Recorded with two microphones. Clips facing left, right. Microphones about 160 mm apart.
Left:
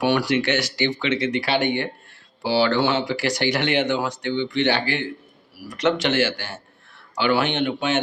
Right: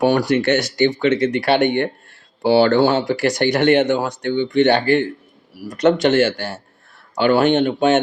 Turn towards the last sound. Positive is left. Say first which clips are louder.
# right 8 dB
turn(degrees=-40)  # may be behind; listen again after turning